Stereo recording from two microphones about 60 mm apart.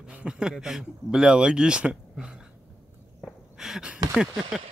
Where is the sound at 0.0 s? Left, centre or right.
Centre.